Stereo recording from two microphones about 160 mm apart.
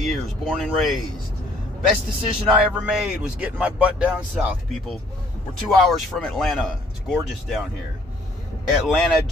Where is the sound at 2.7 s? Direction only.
5° right (ahead or behind).